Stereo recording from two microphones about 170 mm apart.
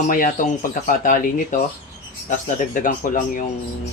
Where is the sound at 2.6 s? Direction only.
55° left (ahead or behind).